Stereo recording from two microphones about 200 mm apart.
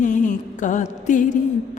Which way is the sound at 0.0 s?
40° left (ahead or behind).